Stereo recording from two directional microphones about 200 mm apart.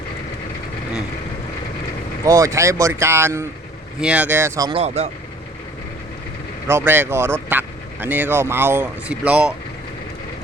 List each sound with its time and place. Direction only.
2.2 s speech: 15° right (ahead or behind)
4.8 s speech: 35° right (ahead or behind)
6.7 s speech: 10° right (ahead or behind)